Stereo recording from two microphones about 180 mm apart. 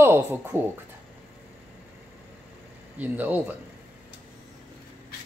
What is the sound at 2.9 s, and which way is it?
Speech, 10° right (ahead or behind).